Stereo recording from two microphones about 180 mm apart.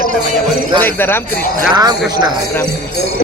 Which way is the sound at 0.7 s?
10° left (ahead or behind).